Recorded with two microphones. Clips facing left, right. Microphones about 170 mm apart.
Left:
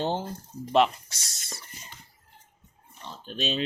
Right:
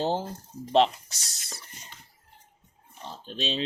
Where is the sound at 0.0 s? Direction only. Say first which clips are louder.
Right 1 dB; 35° right (ahead or behind).